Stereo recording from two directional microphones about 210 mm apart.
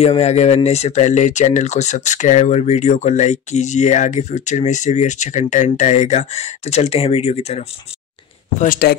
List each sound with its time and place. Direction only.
0.0 s speech: 30° left (ahead or behind)
8.5 s speech: 45° left (ahead or behind)